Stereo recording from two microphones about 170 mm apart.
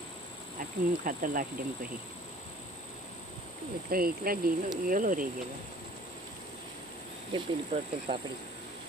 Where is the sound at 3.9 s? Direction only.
60° right (ahead or behind).